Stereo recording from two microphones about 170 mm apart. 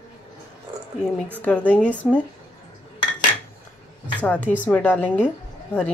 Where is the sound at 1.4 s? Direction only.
10° left (ahead or behind).